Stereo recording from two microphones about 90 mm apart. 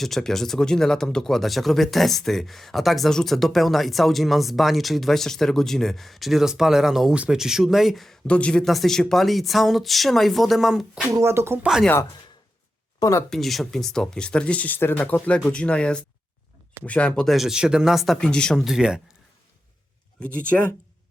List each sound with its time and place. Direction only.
0.0 s speech: 5° left (ahead or behind)
8.3 s speech: 15° left (ahead or behind)
8.6 s speech: centre (ahead or behind)
11.1 s speech: 30° right (ahead or behind)
11.6 s speech: 5° right (ahead or behind)
13.0 s speech: 35° left (ahead or behind)
13.3 s speech: centre (ahead or behind)
18.6 s speech: 5° right (ahead or behind)
20.1 s speech: 15° left (ahead or behind)